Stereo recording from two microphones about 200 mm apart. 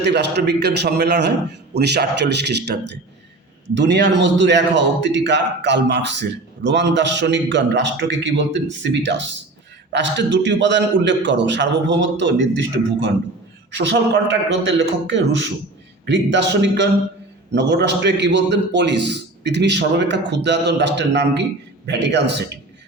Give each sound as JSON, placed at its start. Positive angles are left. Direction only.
{"t": 0.0, "sound": "a man's voice", "side_deg": -60}
{"t": 3.8, "sound": "a man's voice", "side_deg": -60}